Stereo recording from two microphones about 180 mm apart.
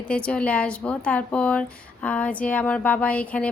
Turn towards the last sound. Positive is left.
turn(degrees=5)  # may be behind; listen again after turning